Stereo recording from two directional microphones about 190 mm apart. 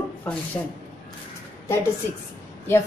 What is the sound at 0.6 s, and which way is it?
Speech, 25° left (ahead or behind).